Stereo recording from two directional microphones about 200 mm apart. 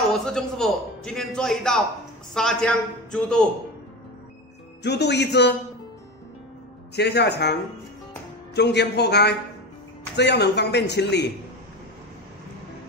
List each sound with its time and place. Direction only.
0.1 s a man's voice: centre (ahead or behind)
4.8 s a man's voice: 55° left (ahead or behind)
7.0 s a man's voice: 55° left (ahead or behind)
8.5 s a man's voice: 55° left (ahead or behind)